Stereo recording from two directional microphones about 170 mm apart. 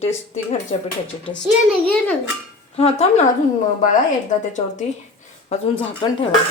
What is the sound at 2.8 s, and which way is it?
Speech, 35° left (ahead or behind).